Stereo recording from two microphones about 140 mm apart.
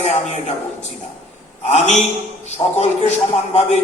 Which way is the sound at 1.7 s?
55° left (ahead or behind).